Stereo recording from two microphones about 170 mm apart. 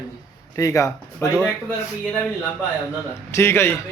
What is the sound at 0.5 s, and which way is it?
Speech, 20° left (ahead or behind).